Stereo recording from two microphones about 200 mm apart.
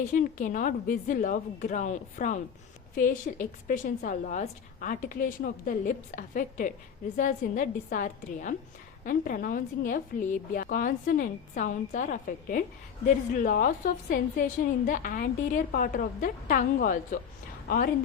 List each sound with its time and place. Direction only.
0.1 s a woman's voice: 40° left (ahead or behind)